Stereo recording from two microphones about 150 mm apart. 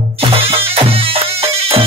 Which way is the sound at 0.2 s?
40° right (ahead or behind).